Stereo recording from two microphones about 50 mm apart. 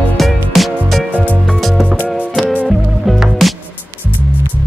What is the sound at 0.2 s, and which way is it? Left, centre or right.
Music, centre.